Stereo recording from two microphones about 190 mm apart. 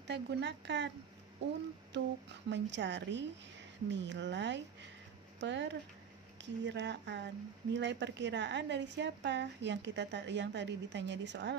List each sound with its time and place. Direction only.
0.0 s a woman's voice: 65° right (ahead or behind)
1.9 s speech: 65° right (ahead or behind)